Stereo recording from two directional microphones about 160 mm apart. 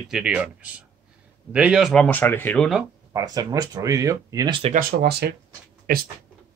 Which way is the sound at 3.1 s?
20° right (ahead or behind).